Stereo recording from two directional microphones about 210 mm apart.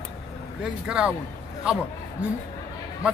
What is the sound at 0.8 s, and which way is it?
Speech, 5° right (ahead or behind).